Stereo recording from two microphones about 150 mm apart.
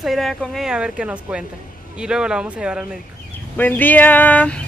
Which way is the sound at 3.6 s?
10° left (ahead or behind).